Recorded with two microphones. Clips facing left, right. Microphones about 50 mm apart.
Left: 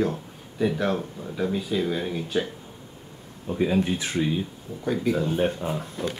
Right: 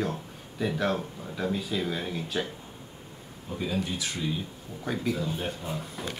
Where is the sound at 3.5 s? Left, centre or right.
Left.